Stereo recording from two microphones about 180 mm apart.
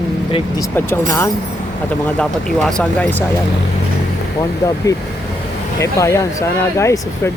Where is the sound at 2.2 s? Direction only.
5° left (ahead or behind).